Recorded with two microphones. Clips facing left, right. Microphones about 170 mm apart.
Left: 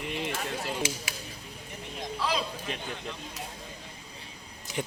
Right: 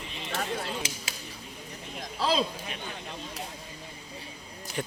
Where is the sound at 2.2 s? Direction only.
30° right (ahead or behind).